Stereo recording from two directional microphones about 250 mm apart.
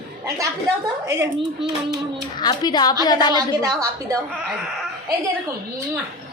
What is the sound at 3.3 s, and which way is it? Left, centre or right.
Speech, centre.